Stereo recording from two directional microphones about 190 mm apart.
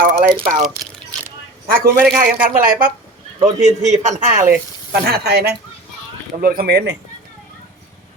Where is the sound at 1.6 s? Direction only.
50° right (ahead or behind).